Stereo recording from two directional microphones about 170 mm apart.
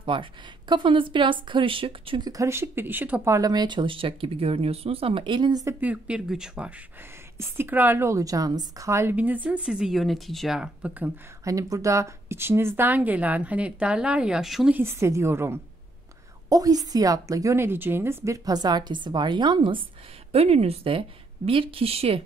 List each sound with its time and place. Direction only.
0.0 s speech: 30° right (ahead or behind)
5.8 s a woman's voice: 10° right (ahead or behind)
11.4 s a woman's voice: 20° right (ahead or behind); by 14.8 s centre (ahead or behind)
14.8 s a woman's voice: 15° right (ahead or behind); by 22.2 s 35° right (ahead or behind)